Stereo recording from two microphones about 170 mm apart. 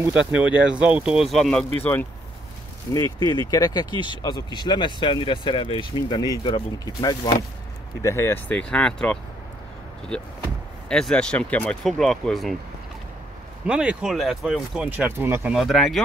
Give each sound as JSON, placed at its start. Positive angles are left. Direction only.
{"t": 0.3, "sound": "speech", "side_deg": -10}
{"t": 2.9, "sound": "speech", "side_deg": 25}
{"t": 13.7, "sound": "speech", "side_deg": -5}
{"t": 15.5, "sound": "speech", "side_deg": 0}